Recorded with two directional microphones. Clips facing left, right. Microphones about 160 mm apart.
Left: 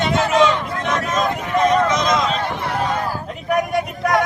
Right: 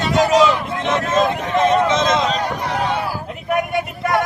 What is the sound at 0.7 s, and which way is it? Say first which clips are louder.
Speech: right 3 dB; 25° right (ahead or behind).